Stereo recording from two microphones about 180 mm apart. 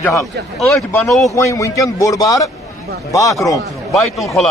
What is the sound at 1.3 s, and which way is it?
A man's voice, 15° left (ahead or behind).